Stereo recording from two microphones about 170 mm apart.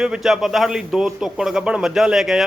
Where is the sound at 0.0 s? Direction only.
5° right (ahead or behind).